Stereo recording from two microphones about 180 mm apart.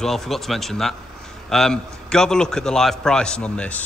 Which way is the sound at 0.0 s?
Centre (ahead or behind).